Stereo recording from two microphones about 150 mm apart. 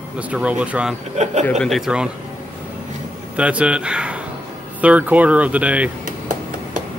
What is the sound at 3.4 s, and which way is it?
Speech, 10° right (ahead or behind).